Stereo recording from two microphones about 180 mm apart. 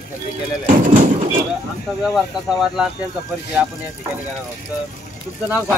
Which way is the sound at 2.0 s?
Centre (ahead or behind).